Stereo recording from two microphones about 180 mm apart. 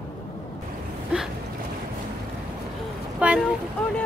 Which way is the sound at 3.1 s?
5° right (ahead or behind).